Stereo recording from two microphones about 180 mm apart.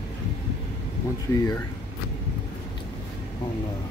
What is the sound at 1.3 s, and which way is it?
Speech, 20° left (ahead or behind).